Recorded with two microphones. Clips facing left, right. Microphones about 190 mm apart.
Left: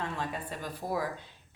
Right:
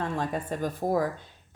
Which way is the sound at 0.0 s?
45° right (ahead or behind).